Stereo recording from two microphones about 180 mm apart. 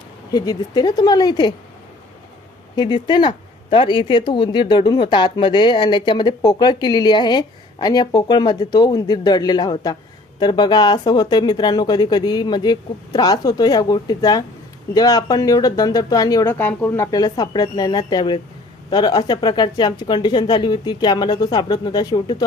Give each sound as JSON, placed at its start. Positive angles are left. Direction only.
{"t": 0.3, "sound": "speech", "side_deg": 20}
{"t": 2.7, "sound": "speech", "side_deg": 25}